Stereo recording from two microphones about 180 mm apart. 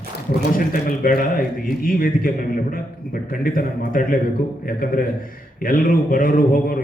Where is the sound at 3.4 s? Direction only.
50° left (ahead or behind).